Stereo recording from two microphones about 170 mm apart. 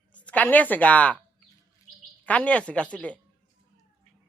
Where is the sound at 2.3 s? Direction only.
5° left (ahead or behind).